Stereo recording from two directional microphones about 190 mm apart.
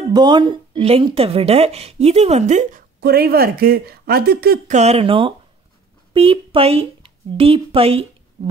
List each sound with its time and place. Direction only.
0.1 s speech: 25° right (ahead or behind)
3.0 s speech: 55° right (ahead or behind)
4.7 s speech: 30° right (ahead or behind)